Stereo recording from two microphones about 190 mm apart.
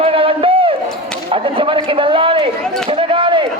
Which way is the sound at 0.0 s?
30° right (ahead or behind).